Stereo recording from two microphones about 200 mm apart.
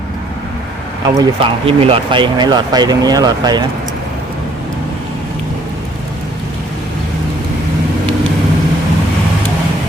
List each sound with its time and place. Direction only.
1.2 s speech: 25° right (ahead or behind)